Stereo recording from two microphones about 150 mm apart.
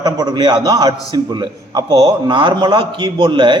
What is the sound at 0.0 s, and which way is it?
A man's voice, 30° right (ahead or behind).